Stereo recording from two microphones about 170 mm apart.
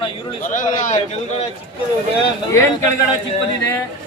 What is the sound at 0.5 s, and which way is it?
Speech, 45° left (ahead or behind).